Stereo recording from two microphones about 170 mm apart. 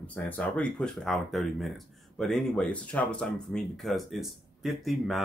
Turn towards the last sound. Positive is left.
turn(degrees=0)  # may be behind; listen again after turning